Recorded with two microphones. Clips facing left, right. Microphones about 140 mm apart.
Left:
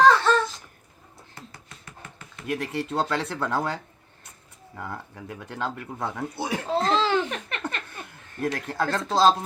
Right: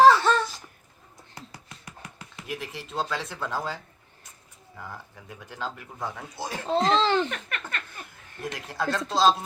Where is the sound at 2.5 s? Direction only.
60° left (ahead or behind).